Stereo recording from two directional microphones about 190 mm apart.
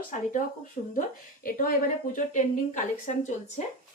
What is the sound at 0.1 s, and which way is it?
Speech, 45° left (ahead or behind).